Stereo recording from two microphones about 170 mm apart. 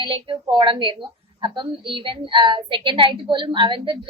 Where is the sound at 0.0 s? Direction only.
30° right (ahead or behind).